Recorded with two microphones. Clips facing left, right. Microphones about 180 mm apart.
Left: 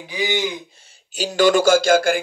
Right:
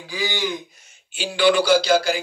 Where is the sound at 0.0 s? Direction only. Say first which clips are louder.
Left 3 dB; 20° left (ahead or behind).